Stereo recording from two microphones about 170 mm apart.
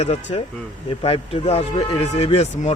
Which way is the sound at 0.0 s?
40° left (ahead or behind).